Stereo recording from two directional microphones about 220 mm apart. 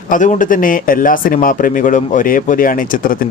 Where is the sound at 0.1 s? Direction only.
35° left (ahead or behind).